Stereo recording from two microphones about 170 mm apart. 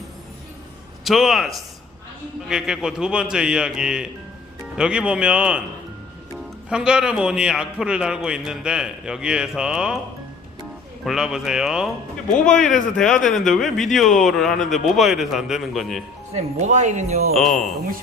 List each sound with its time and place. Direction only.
1.0 s speech: centre (ahead or behind)
6.7 s speech: 5° right (ahead or behind)
11.0 s speech: 5° right (ahead or behind)
13.0 s speech: 5° left (ahead or behind)
16.3 s speech: 45° right (ahead or behind)
17.3 s speech: centre (ahead or behind)